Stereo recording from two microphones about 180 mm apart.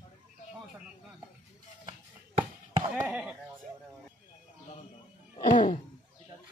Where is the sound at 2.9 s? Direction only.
5° right (ahead or behind).